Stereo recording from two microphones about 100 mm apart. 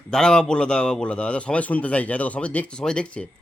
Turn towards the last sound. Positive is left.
turn(degrees=10)  # may be behind; listen again after turning